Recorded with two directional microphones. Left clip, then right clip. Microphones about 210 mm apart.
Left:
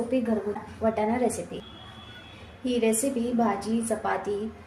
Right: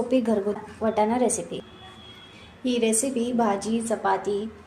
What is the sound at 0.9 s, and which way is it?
Speech, 25° right (ahead or behind).